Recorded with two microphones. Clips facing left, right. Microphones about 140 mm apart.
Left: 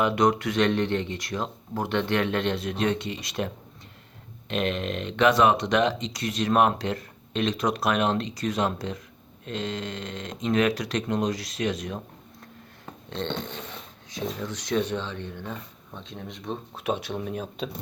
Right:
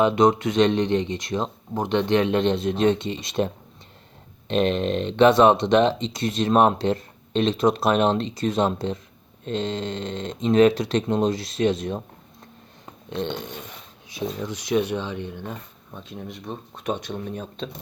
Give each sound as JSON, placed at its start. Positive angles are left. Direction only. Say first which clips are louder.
{"t": 0.0, "sound": "speech", "louder": "right 4 dB", "side_deg": -25}
{"t": 12.8, "sound": "a sound", "louder": "right 4 dB", "side_deg": -15}
{"t": 14.1, "sound": "speech", "louder": "right 3 dB", "side_deg": -10}